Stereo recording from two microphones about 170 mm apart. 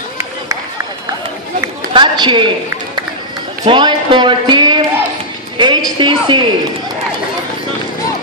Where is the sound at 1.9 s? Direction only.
30° right (ahead or behind).